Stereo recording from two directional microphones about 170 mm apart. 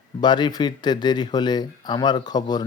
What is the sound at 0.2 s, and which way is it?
Speech, 25° left (ahead or behind).